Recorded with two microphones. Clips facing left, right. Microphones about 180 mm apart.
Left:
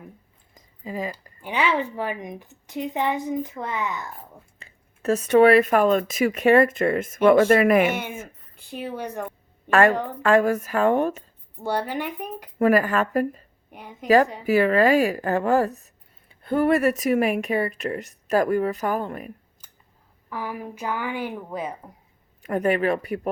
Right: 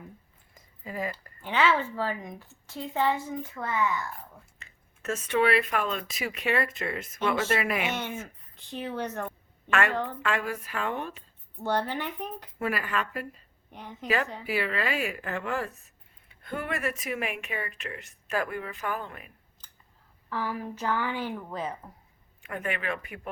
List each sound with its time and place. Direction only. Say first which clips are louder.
0.5 s speech: left 5 dB; 15° left (ahead or behind)
4.6 s speech: left 9 dB; 35° left (ahead or behind); by 7.9 s 55° left (ahead or behind)
8.5 s speech: left 2 dB; 10° left (ahead or behind)
9.6 s a woman's voice: left 9 dB; 40° left (ahead or behind)
9.9 s speech: left 4 dB; 15° left (ahead or behind)
10.2 s speech: left 12 dB; 45° left (ahead or behind)
11.5 s speech: left 3 dB; 10° left (ahead or behind)
12.5 s speech: left 12 dB; 50° left (ahead or behind)
13.7 s a woman's voice: left 2 dB; 10° left (ahead or behind)
14.4 s speech: left 12 dB; 45° left (ahead or behind)
19.6 s scissors: left 1 dB; 10° left (ahead or behind)
20.3 s speech: left 1 dB; 15° left (ahead or behind)
22.4 s speech: left 11 dB; 40° left (ahead or behind)